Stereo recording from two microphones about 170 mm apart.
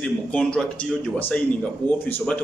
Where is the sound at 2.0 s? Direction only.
10° left (ahead or behind).